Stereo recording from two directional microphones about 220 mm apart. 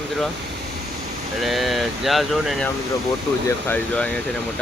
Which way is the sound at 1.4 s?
Centre (ahead or behind).